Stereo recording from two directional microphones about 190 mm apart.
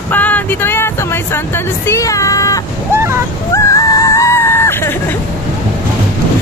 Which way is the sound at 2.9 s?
15° right (ahead or behind).